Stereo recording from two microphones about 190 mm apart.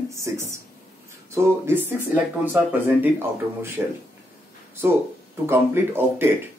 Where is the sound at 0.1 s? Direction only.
15° right (ahead or behind).